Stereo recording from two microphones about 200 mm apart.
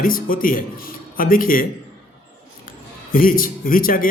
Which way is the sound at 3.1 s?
45° left (ahead or behind).